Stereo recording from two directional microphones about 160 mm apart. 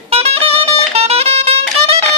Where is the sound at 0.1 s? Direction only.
40° right (ahead or behind).